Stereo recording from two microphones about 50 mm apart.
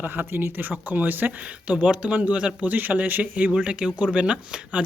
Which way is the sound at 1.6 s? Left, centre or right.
Right.